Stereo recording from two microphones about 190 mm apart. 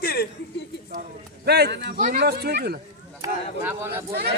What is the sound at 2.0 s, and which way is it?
Speech, 40° right (ahead or behind).